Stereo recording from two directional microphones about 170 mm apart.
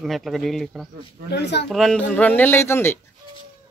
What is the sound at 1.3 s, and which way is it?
Speech, 85° left.